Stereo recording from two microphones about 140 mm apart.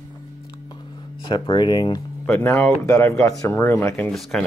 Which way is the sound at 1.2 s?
35° left (ahead or behind).